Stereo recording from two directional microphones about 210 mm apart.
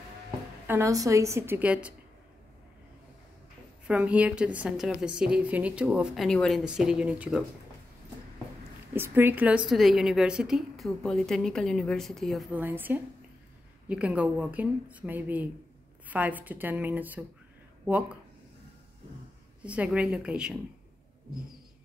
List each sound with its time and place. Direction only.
0.7 s a woman's voice: 15° right (ahead or behind)
3.8 s a woman's voice: 5° right (ahead or behind)
8.9 s a woman's voice: 10° right (ahead or behind)
19.6 s a woman's voice: 5° right (ahead or behind)